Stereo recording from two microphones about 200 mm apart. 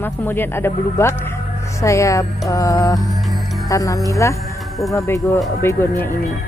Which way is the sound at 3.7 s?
15° left (ahead or behind).